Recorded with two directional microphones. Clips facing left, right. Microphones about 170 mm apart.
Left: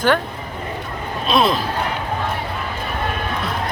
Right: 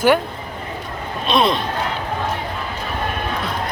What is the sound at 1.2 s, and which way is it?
Speech, centre (ahead or behind).